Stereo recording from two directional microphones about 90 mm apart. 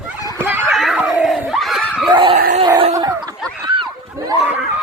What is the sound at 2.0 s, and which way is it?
Dog, 65° right (ahead or behind).